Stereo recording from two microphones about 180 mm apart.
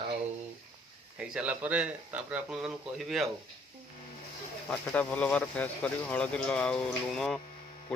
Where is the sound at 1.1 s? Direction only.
5° right (ahead or behind).